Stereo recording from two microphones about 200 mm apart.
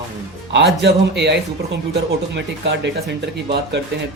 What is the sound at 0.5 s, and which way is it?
Speech, 60° right (ahead or behind).